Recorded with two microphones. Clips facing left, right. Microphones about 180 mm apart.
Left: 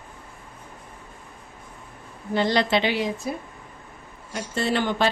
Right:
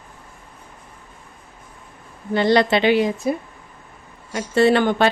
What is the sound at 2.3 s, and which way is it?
Speech, 60° right (ahead or behind).